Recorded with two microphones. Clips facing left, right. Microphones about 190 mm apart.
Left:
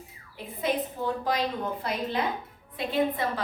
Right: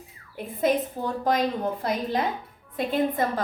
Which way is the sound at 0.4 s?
55° right (ahead or behind).